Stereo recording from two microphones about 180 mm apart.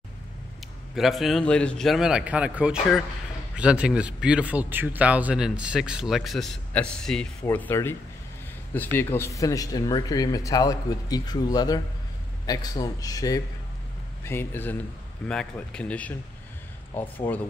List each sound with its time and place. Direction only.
0.9 s speech: centre (ahead or behind)
8.9 s speech: 15° left (ahead or behind)